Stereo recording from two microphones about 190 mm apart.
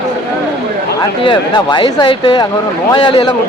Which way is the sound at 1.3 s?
25° left (ahead or behind).